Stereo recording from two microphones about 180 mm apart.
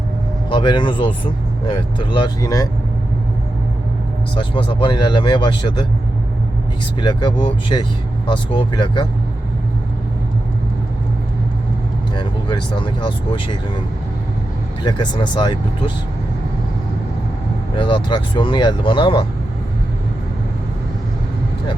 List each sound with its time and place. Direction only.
0.5 s speech: 25° left (ahead or behind)
4.4 s speech: 30° left (ahead or behind)
7.0 s speech: 25° left (ahead or behind)
12.1 s speech: 25° left (ahead or behind)
14.8 s speech: 25° left (ahead or behind)
17.7 s speech: 25° left (ahead or behind)